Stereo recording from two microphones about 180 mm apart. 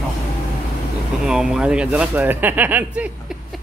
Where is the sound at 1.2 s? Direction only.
5° right (ahead or behind).